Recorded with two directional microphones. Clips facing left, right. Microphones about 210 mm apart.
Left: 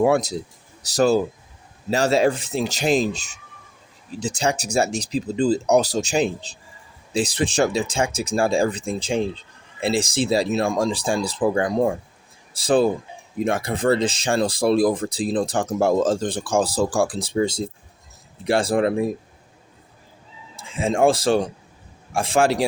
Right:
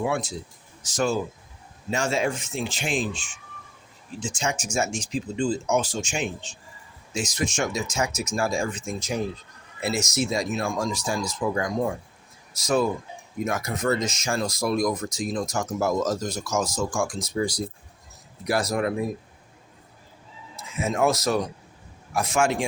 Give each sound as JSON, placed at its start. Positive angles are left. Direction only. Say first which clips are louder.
{"t": 0.0, "sound": "speech", "louder": "left 8 dB", "side_deg": 40}
{"t": 20.6, "sound": "speech", "louder": "left 5 dB", "side_deg": 30}